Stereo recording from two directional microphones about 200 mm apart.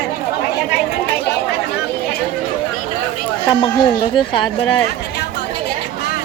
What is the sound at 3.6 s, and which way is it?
Speech, 25° left (ahead or behind).